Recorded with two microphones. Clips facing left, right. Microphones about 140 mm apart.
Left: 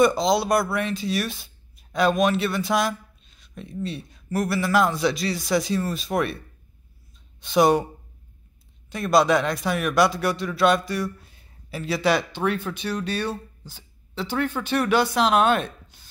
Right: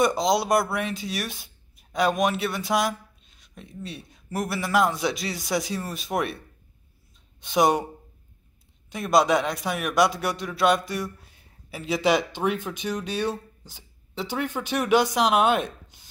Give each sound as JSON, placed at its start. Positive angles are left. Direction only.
{"t": 0.0, "sound": "speech", "side_deg": -15}
{"t": 8.9, "sound": "speech", "side_deg": -15}